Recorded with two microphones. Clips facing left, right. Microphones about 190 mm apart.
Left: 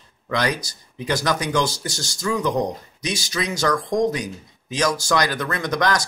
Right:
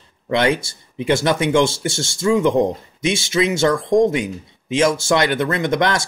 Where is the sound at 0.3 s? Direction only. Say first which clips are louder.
Right 6 dB; 25° right (ahead or behind).